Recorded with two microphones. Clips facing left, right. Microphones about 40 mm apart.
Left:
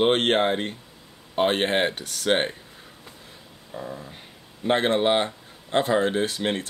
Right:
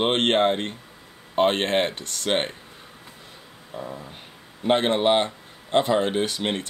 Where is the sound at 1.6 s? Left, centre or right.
Centre.